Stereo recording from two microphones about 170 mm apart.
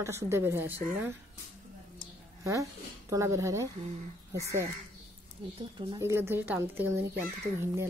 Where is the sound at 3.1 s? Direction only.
20° right (ahead or behind).